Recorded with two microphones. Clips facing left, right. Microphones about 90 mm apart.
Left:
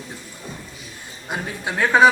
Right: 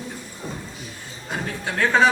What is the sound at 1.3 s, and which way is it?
Speech, 15° left (ahead or behind).